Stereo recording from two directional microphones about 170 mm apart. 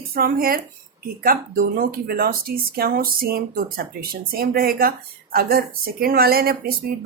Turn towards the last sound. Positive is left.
turn(degrees=-60)  # may be behind; listen again after turning